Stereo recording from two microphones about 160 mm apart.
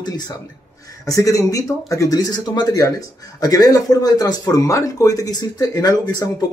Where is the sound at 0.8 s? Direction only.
20° left (ahead or behind).